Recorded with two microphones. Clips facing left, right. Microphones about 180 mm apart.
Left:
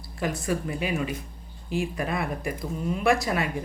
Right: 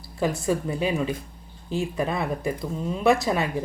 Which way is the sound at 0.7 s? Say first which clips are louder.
Right 3 dB; 30° right (ahead or behind).